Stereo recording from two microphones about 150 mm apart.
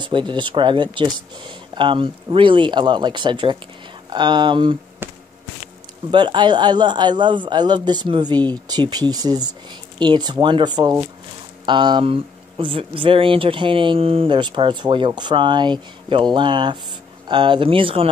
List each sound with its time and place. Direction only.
0.0 s speech: 35° right (ahead or behind)
5.0 s insect: 15° right (ahead or behind)
6.1 s speech: 30° right (ahead or behind)